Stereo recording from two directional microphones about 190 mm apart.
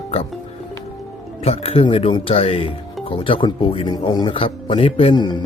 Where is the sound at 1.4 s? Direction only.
30° left (ahead or behind).